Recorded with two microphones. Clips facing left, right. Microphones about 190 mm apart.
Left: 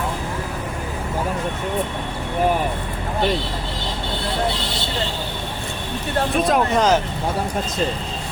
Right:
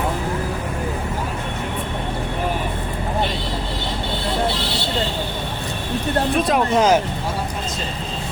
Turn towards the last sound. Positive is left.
turn(degrees=-5)  # may be behind; listen again after turning